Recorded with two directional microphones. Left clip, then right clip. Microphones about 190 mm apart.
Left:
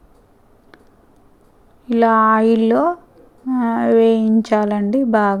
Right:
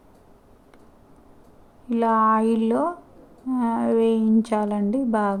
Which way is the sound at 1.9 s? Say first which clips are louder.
Left 6 dB; 25° left (ahead or behind).